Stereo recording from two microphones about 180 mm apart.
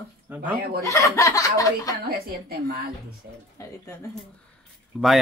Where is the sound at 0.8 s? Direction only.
15° left (ahead or behind).